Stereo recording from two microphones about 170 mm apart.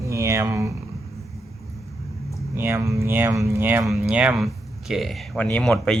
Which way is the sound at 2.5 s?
15° right (ahead or behind).